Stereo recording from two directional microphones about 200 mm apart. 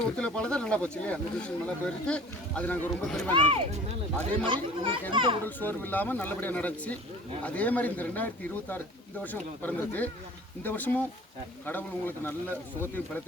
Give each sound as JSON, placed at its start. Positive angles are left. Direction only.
{"t": 0.0, "sound": "speech", "side_deg": 5}
{"t": 3.3, "sound": "a child's voice", "side_deg": -30}
{"t": 5.5, "sound": "speech", "side_deg": 10}